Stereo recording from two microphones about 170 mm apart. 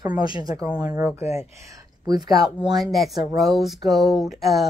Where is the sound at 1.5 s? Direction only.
20° right (ahead or behind).